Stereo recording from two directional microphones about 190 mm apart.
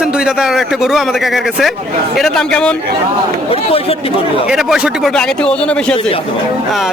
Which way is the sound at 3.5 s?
30° left (ahead or behind).